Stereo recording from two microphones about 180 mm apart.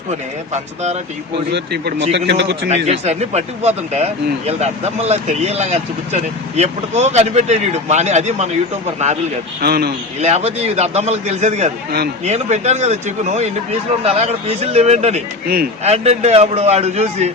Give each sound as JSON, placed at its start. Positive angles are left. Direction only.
{"t": 0.1, "sound": "speech", "side_deg": -40}
{"t": 1.5, "sound": "a man's voice", "side_deg": -70}
{"t": 2.6, "sound": "speech", "side_deg": -40}
{"t": 9.6, "sound": "a man's voice", "side_deg": -60}
{"t": 10.2, "sound": "speech", "side_deg": -40}